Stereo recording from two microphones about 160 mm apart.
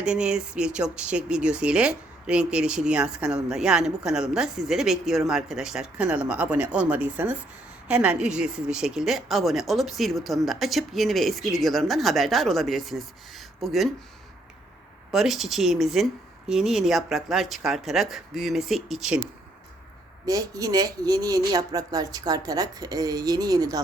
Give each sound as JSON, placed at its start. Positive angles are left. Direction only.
{"t": 0.0, "sound": "speech", "side_deg": -5}
{"t": 15.1, "sound": "speech", "side_deg": 0}
{"t": 20.2, "sound": "speech", "side_deg": -25}